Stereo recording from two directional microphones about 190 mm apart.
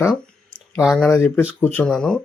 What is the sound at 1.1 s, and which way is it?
Speech, 15° left (ahead or behind).